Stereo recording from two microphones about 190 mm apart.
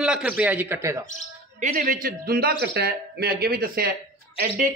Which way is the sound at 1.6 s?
45° right (ahead or behind).